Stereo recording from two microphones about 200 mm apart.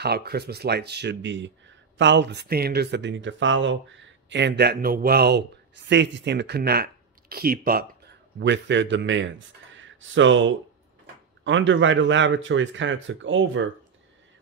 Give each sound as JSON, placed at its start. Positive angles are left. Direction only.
{"t": 0.0, "sound": "speech", "side_deg": -50}